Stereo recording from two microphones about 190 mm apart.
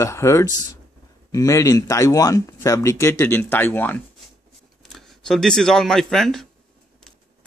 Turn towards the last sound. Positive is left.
turn(degrees=0)  # may be behind; listen again after turning